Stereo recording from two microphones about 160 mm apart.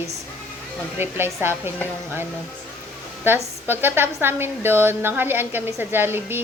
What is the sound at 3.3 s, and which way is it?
A woman's voice, 15° right (ahead or behind).